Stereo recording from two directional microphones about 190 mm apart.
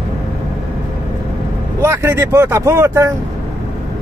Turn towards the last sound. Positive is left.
turn(degrees=-15)  # may be behind; listen again after turning